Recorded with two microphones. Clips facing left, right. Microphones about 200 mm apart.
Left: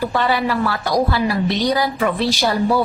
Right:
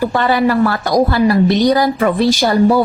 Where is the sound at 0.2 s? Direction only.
50° right (ahead or behind).